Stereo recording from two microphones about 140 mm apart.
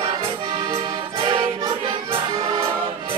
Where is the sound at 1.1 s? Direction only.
35° right (ahead or behind).